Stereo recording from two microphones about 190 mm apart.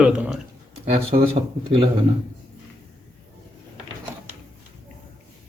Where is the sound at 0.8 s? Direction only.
30° right (ahead or behind).